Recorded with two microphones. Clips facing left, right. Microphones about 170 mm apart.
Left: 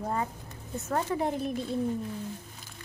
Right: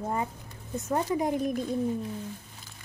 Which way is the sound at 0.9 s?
15° right (ahead or behind).